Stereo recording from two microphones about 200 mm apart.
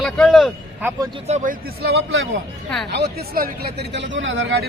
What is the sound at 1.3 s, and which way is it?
Speech, 45° right (ahead or behind).